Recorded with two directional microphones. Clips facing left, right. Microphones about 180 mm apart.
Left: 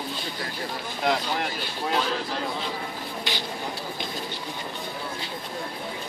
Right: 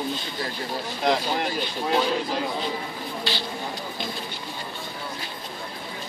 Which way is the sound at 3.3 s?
20° left (ahead or behind).